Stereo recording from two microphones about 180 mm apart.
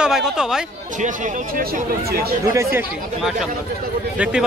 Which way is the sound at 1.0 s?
45° right (ahead or behind).